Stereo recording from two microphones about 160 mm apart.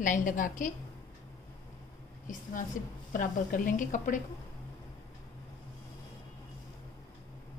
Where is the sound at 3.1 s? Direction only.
60° left (ahead or behind).